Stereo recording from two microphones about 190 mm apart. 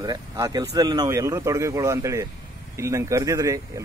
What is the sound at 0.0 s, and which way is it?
Speech, 20° right (ahead or behind).